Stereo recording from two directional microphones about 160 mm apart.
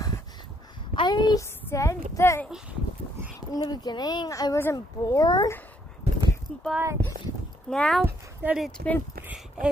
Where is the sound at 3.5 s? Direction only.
25° left (ahead or behind).